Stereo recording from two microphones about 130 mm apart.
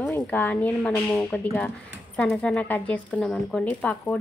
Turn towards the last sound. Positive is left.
turn(degrees=10)  # may be behind; listen again after turning